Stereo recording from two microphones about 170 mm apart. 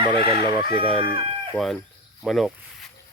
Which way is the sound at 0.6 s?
35° right (ahead or behind).